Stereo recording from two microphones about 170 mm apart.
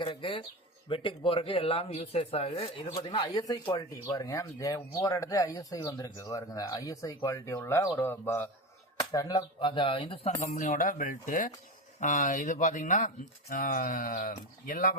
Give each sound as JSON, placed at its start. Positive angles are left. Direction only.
{"t": 0.0, "sound": "speech", "side_deg": 30}
{"t": 9.0, "sound": "speech", "side_deg": 20}
{"t": 10.4, "sound": "speech", "side_deg": 45}